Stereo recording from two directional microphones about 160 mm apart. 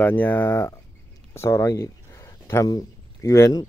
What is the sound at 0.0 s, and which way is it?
Speech, 10° left (ahead or behind).